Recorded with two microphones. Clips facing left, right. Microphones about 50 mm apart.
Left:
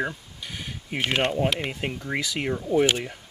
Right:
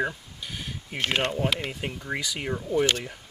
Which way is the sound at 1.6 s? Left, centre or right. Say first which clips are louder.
Left 3 dB; centre.